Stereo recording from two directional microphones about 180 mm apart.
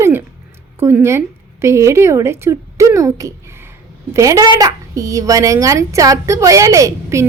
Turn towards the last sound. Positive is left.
turn(degrees=-15)  # may be behind; listen again after turning